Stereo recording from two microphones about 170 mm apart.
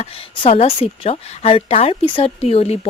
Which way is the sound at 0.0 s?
35° left (ahead or behind).